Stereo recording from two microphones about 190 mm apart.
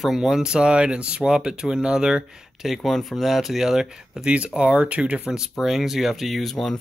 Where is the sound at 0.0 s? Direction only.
Centre (ahead or behind).